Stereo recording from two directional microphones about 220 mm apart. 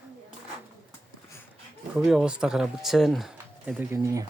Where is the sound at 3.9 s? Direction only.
15° right (ahead or behind).